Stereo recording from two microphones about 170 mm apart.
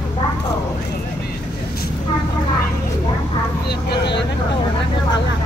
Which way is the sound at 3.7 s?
80° left.